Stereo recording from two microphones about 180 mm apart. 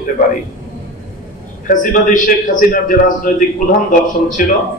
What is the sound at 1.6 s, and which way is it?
A man's voice, 50° left (ahead or behind).